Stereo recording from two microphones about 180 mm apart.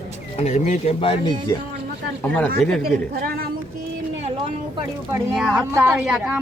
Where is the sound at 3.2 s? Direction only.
60° right (ahead or behind).